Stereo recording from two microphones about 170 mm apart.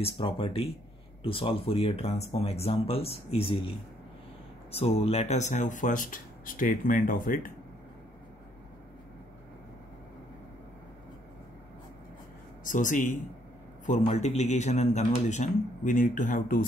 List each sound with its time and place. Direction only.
0.0 s speech: 30° left (ahead or behind); by 7.5 s 55° left (ahead or behind)
12.6 s speech: 50° left (ahead or behind)